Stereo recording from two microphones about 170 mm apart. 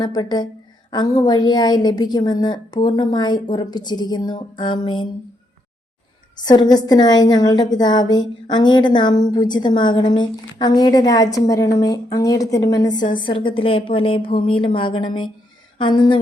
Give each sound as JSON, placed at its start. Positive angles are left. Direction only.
{"t": 0.0, "sound": "a woman's voice", "side_deg": 25}
{"t": 6.3, "sound": "a woman's voice", "side_deg": 25}